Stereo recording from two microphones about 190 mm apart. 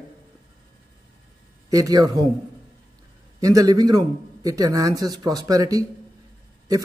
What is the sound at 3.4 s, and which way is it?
A man's voice, 20° right (ahead or behind).